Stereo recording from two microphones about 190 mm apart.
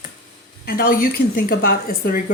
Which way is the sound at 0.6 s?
55° left (ahead or behind).